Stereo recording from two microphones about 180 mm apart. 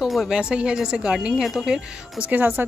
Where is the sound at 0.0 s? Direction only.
Centre (ahead or behind).